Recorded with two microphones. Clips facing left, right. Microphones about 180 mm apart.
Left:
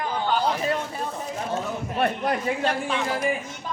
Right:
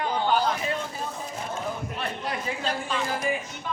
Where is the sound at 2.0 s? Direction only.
55° left (ahead or behind).